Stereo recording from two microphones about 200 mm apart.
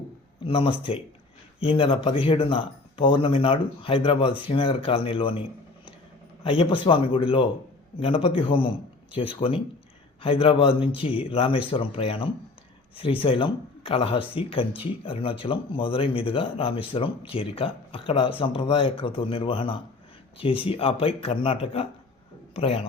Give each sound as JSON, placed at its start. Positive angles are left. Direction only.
{"t": 0.4, "sound": "speech", "side_deg": 25}